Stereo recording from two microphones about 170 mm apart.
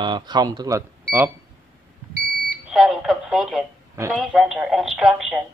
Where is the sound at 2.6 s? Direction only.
Centre (ahead or behind).